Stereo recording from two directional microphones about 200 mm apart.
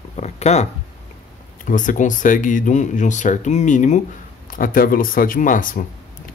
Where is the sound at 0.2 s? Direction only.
35° left (ahead or behind).